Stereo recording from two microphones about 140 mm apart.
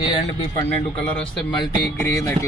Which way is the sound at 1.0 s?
5° left (ahead or behind).